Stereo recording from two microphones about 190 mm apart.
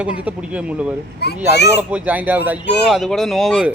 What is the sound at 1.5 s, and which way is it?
Speech, 60° left (ahead or behind).